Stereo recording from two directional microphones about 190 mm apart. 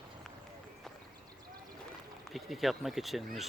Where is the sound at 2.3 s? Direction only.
Centre (ahead or behind).